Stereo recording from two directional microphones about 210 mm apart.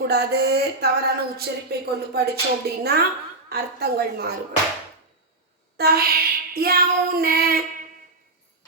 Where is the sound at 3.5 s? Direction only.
50° right (ahead or behind).